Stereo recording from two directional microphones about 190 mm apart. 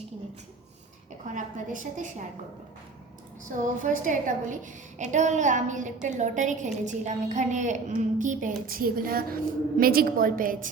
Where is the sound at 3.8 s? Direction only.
45° right (ahead or behind).